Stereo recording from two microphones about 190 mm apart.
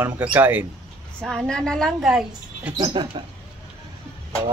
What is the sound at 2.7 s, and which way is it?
Speech, 20° right (ahead or behind).